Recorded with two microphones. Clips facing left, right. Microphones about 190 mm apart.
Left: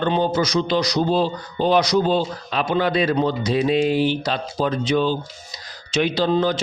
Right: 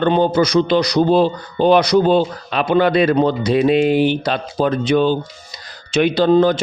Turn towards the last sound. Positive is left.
turn(degrees=-55)  # may be behind; listen again after turning